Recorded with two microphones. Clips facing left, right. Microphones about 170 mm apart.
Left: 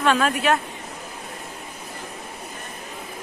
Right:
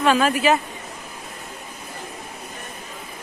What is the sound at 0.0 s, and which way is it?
Speech, 5° right (ahead or behind).